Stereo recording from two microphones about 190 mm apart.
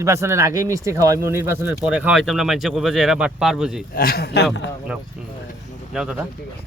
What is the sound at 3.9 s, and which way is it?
Speech, 50° left (ahead or behind).